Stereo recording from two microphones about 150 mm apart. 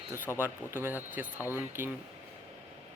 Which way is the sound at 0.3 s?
15° right (ahead or behind).